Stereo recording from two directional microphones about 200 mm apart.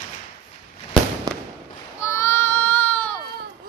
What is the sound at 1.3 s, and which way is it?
Fireworks, 20° right (ahead or behind).